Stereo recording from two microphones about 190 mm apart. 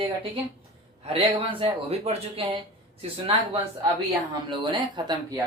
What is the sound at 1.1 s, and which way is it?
Speech, 30° right (ahead or behind).